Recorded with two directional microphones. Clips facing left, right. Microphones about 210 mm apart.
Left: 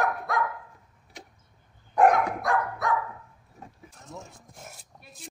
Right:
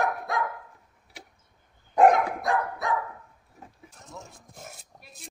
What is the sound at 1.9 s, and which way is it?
Dog, 25° right (ahead or behind).